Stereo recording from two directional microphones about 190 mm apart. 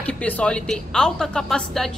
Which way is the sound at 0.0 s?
5° left (ahead or behind).